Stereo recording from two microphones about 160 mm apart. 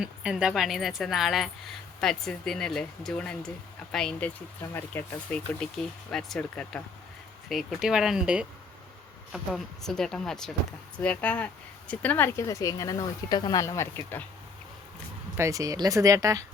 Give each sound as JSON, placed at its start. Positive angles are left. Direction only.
{"t": 0.0, "sound": "speech", "side_deg": -5}
{"t": 15.4, "sound": "speech", "side_deg": -20}